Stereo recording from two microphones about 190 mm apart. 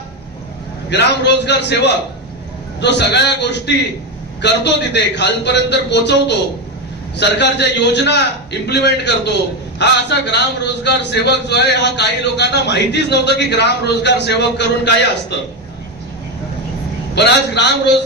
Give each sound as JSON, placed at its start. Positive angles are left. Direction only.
{"t": 0.9, "sound": "a man's voice", "side_deg": 65}
{"t": 17.2, "sound": "a man's voice", "side_deg": 65}